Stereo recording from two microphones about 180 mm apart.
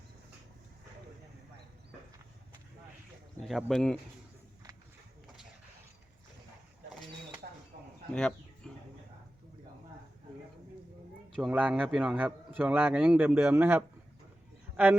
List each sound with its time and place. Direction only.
3.4 s speech: centre (ahead or behind)
7.4 s a sound: 50° right (ahead or behind)
8.1 s chicken: 5° left (ahead or behind)
11.3 s a man's voice: 5° right (ahead or behind)